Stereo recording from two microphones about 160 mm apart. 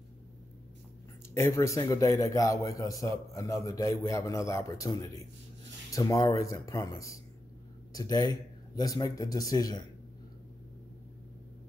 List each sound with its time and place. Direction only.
1.3 s a man's voice: 15° left (ahead or behind)